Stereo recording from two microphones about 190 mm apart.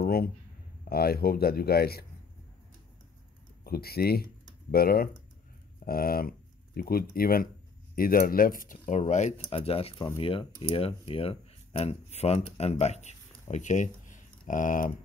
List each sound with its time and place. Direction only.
0.0 s a sound: 50° left (ahead or behind)
0.8 s speech: 55° left (ahead or behind)
3.6 s speech: 55° left (ahead or behind)